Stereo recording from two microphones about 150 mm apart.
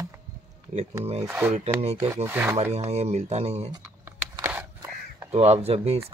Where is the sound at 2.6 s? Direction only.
45° right (ahead or behind).